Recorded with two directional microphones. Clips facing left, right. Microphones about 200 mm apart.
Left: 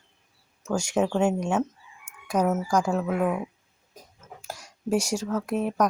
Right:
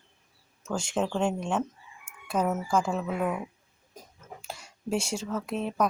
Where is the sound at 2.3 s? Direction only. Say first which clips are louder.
Left 3 dB; 15° left (ahead or behind).